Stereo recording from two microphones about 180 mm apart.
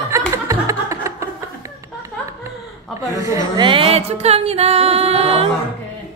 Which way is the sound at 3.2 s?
15° right (ahead or behind).